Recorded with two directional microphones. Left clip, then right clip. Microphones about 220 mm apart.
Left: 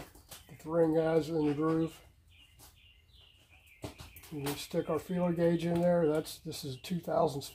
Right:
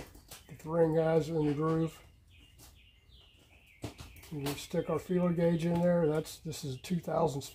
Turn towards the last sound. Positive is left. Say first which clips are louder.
# left 1 dB
turn(degrees=-20)  # may be behind; listen again after turning